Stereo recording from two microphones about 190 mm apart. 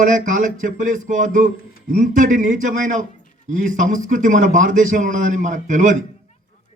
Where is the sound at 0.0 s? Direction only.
40° right (ahead or behind).